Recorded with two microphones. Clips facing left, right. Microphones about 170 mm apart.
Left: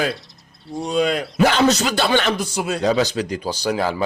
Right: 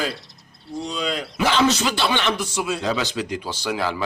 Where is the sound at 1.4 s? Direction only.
40° left (ahead or behind).